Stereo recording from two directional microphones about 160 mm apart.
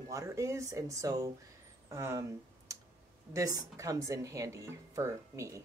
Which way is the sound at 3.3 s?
20° right (ahead or behind).